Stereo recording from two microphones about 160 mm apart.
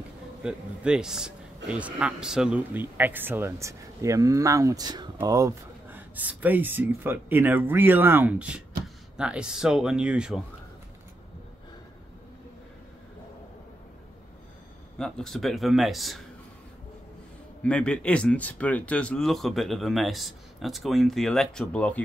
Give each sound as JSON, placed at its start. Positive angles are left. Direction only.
{"t": 0.4, "sound": "speech", "side_deg": -5}
{"t": 5.9, "sound": "speech", "side_deg": -10}
{"t": 15.0, "sound": "speech", "side_deg": 5}
{"t": 17.6, "sound": "speech", "side_deg": 5}